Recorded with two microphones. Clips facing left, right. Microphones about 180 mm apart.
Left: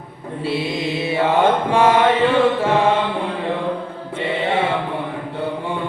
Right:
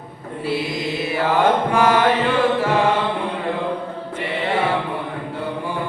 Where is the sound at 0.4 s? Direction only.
25° left (ahead or behind).